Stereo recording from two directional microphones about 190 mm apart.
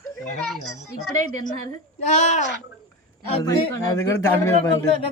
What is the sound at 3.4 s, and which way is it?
Speech, 15° left (ahead or behind).